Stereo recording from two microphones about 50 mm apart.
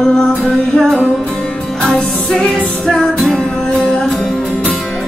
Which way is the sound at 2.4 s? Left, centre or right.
Centre.